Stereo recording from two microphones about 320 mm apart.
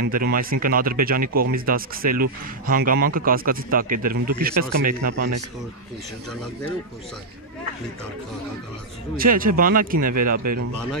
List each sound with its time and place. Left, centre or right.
0.1 s speech: right
9.1 s speech: right
10.4 s speech: right